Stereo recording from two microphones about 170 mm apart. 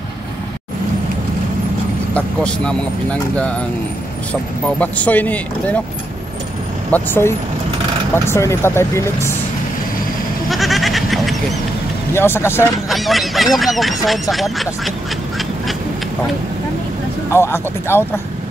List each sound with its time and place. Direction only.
2.1 s speech: 5° left (ahead or behind)
6.9 s speech: 15° left (ahead or behind)
10.5 s goat: centre (ahead or behind)
12.1 s speech: 15° left (ahead or behind)
12.9 s speech: centre (ahead or behind)
17.3 s speech: 15° left (ahead or behind)